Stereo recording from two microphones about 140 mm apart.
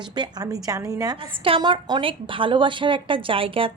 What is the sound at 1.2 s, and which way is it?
A woman's voice, 40° right (ahead or behind).